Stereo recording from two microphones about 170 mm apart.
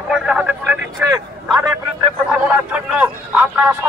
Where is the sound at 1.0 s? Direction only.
20° right (ahead or behind).